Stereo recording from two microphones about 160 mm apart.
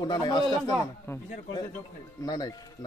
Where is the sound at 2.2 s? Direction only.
25° left (ahead or behind).